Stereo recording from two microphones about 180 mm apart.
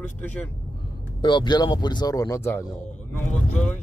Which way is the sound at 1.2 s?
25° left (ahead or behind).